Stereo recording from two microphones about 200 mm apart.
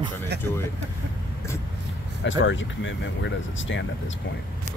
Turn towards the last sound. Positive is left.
turn(degrees=65)  # may be behind; listen again after turning